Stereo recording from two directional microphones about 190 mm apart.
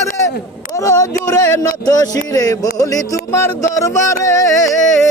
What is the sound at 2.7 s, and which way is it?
Speech, 20° left (ahead or behind).